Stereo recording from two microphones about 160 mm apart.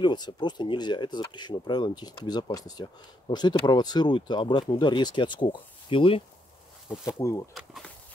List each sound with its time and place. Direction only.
0.0 s speech: 25° left (ahead or behind)
7.2 s speech: 20° left (ahead or behind)
7.5 s speech: centre (ahead or behind)